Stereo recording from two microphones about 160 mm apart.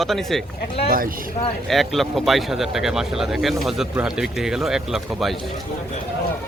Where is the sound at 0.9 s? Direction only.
60° right (ahead or behind).